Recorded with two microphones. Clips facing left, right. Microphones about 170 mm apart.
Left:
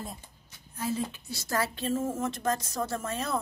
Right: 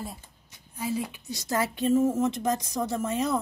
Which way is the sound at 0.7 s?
10° right (ahead or behind).